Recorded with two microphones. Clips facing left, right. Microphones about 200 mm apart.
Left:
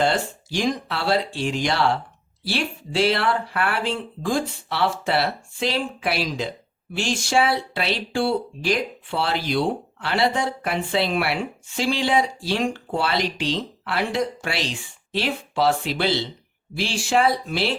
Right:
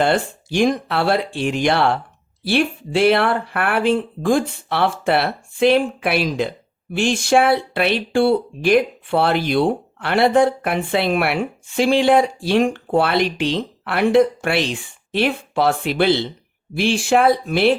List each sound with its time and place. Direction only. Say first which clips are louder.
0.0 s speech: right 4 dB; 55° right (ahead or behind)